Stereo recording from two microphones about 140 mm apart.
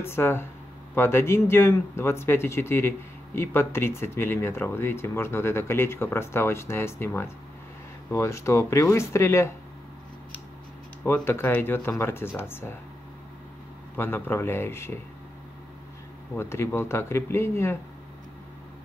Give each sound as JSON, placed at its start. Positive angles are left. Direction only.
{"t": 0.0, "sound": "speech", "side_deg": 15}
{"t": 11.1, "sound": "speech", "side_deg": 15}
{"t": 13.9, "sound": "speech", "side_deg": 15}
{"t": 16.3, "sound": "speech", "side_deg": 20}